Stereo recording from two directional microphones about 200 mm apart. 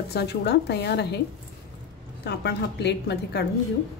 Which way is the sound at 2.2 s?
55° left (ahead or behind).